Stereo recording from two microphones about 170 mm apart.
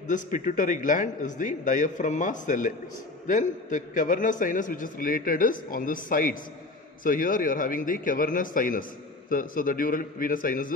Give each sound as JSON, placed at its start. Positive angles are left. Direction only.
{"t": 0.1, "sound": "a man's voice", "side_deg": 50}